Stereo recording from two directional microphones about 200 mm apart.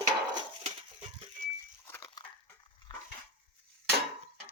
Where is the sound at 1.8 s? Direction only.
15° left (ahead or behind).